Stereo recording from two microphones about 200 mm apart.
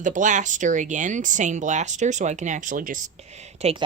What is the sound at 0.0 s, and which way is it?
Speech, 40° right (ahead or behind).